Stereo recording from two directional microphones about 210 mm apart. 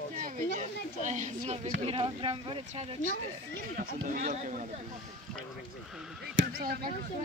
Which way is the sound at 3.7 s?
35° right (ahead or behind).